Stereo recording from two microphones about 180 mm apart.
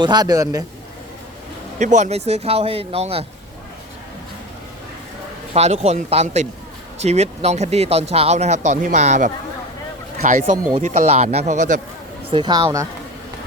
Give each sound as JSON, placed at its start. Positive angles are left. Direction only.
{"t": 0.0, "sound": "a man's voice", "side_deg": -20}
{"t": 1.8, "sound": "speech", "side_deg": -40}
{"t": 5.5, "sound": "speech", "side_deg": -35}
{"t": 12.3, "sound": "a man's voice", "side_deg": -25}